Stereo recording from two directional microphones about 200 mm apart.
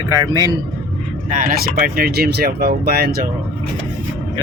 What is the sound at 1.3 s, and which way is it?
Speech, 40° right (ahead or behind).